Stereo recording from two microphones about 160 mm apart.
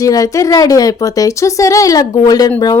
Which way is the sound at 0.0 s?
20° left (ahead or behind).